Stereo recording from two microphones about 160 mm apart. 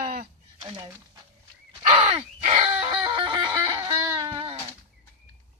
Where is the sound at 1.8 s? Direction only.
40° right (ahead or behind); by 4.3 s 15° right (ahead or behind).